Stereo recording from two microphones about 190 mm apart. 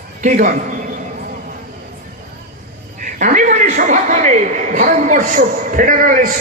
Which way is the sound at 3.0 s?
45° right (ahead or behind).